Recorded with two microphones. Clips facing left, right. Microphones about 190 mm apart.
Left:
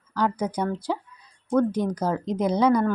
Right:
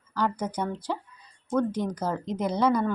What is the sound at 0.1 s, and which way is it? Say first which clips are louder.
Speech: left 3 dB; 10° left (ahead or behind).